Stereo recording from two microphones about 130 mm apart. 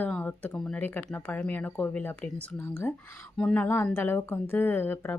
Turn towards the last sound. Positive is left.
turn(degrees=15)  # may be behind; listen again after turning